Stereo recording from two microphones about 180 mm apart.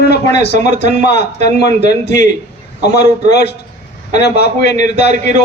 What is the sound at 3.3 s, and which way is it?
A man's voice, 65° left (ahead or behind).